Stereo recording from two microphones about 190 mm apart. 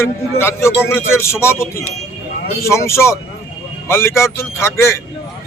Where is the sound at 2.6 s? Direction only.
15° left (ahead or behind).